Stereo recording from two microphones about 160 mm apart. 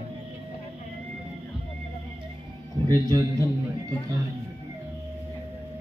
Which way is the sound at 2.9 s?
20° right (ahead or behind).